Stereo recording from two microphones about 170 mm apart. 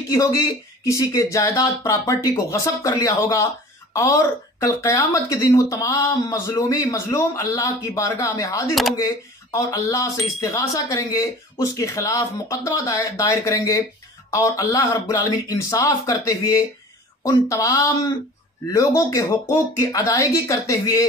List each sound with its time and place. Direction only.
0.1 s speech: 20° left (ahead or behind)